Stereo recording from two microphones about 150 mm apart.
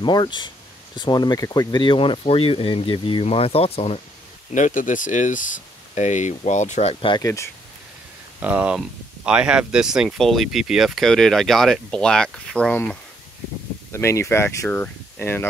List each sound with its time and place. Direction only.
0.0 s speech: 30° left (ahead or behind)
4.6 s speech: 55° left (ahead or behind); by 7.2 s 35° left (ahead or behind)
8.4 s speech: 10° right (ahead or behind); by 12.9 s 10° left (ahead or behind)
13.9 s speech: 20° left (ahead or behind)